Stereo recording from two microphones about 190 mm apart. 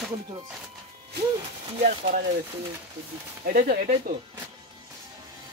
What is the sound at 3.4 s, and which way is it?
Speech, 50° right (ahead or behind).